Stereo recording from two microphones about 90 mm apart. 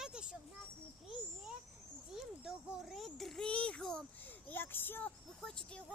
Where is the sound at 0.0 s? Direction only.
10° right (ahead or behind).